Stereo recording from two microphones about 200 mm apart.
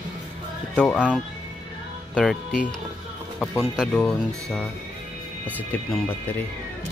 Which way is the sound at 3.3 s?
Centre (ahead or behind).